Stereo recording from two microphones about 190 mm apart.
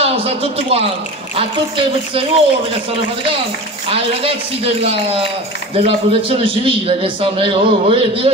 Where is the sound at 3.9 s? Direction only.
30° right (ahead or behind).